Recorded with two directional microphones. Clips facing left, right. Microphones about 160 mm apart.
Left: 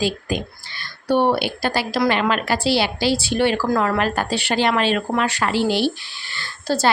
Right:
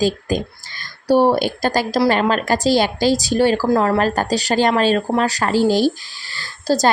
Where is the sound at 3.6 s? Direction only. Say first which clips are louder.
Right 4 dB; 30° right (ahead or behind).